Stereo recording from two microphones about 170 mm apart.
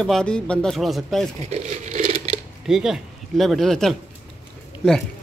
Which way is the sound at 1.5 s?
45° right (ahead or behind).